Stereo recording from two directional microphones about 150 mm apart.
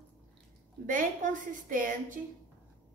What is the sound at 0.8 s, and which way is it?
A woman's voice, 60° right (ahead or behind).